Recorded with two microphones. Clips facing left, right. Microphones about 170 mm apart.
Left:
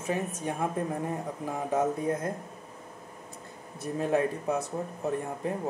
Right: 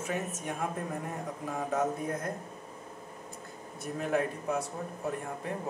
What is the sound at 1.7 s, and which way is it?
Speech, 25° left (ahead or behind).